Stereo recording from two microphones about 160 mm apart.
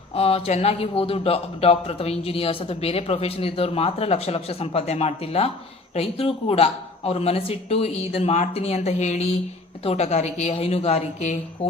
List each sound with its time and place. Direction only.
0.1 s a man's voice: 40° left (ahead or behind)